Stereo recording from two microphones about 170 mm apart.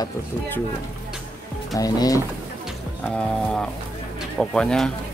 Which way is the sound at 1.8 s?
20° left (ahead or behind).